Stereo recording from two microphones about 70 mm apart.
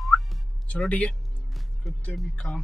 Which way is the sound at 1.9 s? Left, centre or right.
Centre.